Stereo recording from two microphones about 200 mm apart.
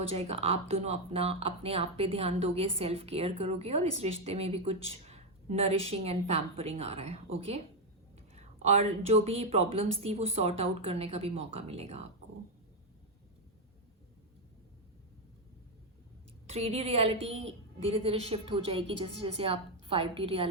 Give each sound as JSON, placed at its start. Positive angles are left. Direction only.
{"t": 0.1, "sound": "speech", "side_deg": -30}
{"t": 16.5, "sound": "a woman's voice", "side_deg": -30}